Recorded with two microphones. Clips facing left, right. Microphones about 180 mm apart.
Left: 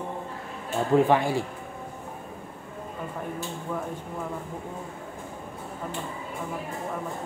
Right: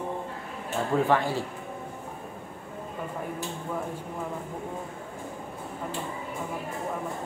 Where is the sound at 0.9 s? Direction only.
15° left (ahead or behind).